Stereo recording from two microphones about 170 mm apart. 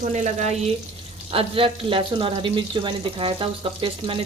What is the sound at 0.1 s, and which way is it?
Speech, 45° right (ahead or behind).